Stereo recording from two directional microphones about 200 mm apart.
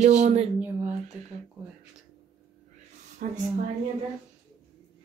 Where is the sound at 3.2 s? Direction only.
45° right (ahead or behind).